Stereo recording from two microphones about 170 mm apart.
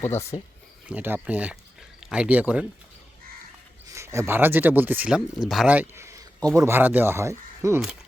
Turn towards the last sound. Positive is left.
turn(degrees=-15)  # may be behind; listen again after turning